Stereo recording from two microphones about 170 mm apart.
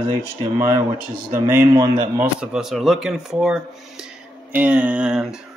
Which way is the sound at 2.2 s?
5° right (ahead or behind).